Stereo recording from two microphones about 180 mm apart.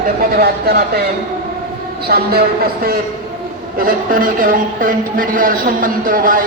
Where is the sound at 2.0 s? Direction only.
60° right (ahead or behind).